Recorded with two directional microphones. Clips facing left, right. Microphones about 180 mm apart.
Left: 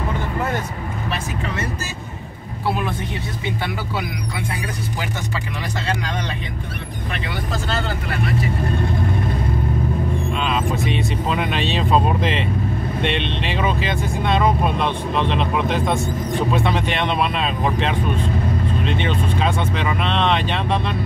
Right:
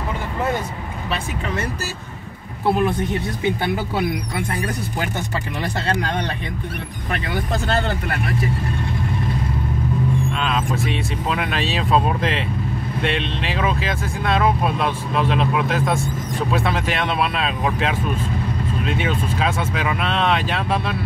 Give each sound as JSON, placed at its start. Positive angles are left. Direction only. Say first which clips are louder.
{"t": 2.6, "sound": "speech", "louder": "right 4 dB", "side_deg": -50}
{"t": 10.4, "sound": "speech", "louder": "left 1 dB", "side_deg": 0}